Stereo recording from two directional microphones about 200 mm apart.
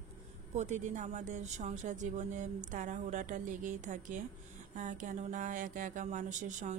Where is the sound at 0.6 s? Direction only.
35° right (ahead or behind).